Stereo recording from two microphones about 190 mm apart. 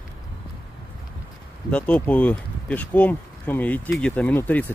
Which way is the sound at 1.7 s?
5° left (ahead or behind).